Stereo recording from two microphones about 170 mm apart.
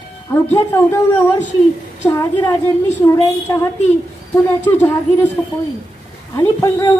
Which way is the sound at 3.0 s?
20° left (ahead or behind).